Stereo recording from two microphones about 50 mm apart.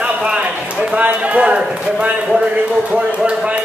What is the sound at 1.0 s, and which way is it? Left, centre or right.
Speech, right.